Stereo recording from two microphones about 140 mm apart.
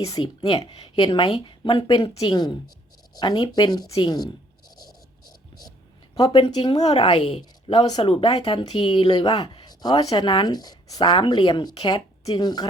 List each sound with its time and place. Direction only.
0.0 s speech: 25° left (ahead or behind)
2.0 s speech: 25° left (ahead or behind)
5.2 s hum: 30° left (ahead or behind)
6.1 s speech: 35° left (ahead or behind)